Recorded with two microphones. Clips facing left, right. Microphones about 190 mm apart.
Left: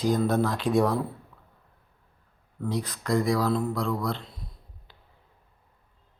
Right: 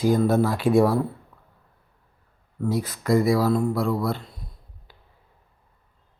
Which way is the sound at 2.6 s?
5° right (ahead or behind).